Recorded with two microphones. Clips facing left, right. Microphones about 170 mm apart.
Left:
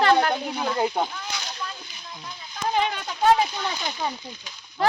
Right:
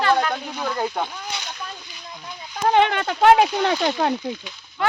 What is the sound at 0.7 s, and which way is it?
Speech, 15° left (ahead or behind).